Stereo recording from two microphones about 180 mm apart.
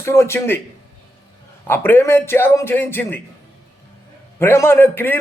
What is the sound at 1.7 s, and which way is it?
A man's voice, 10° left (ahead or behind).